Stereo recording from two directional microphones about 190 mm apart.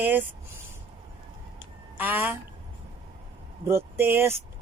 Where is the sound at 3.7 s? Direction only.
10° right (ahead or behind).